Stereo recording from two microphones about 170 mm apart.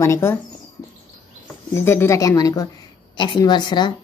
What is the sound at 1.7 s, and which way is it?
A woman's voice, 15° left (ahead or behind).